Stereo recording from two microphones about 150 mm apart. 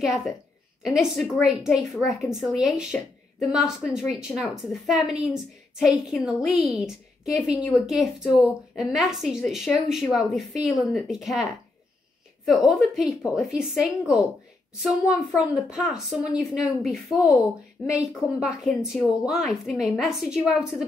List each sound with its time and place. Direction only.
0.0 s a woman's voice: centre (ahead or behind)
12.4 s a woman's voice: centre (ahead or behind)